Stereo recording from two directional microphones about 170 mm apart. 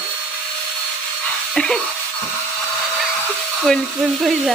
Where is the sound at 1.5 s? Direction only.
5° left (ahead or behind).